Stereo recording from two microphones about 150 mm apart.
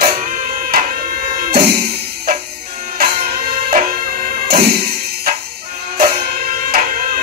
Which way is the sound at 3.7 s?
70° right (ahead or behind).